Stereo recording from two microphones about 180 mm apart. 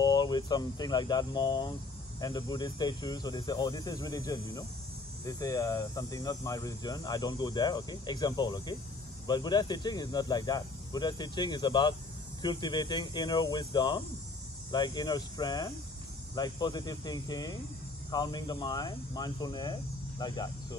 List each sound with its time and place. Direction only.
0.0 s speech: 20° left (ahead or behind)